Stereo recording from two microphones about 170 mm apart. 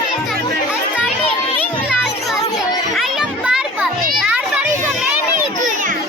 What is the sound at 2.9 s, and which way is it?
Children playing, centre (ahead or behind).